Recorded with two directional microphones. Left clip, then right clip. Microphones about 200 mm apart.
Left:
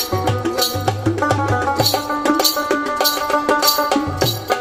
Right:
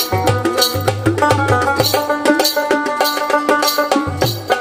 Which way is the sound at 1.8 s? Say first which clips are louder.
Right 3 dB; 5° right (ahead or behind).